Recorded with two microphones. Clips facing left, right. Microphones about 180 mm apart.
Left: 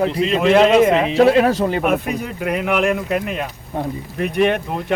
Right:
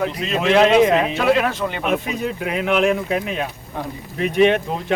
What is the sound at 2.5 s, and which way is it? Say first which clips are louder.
Speech: even; centre (ahead or behind).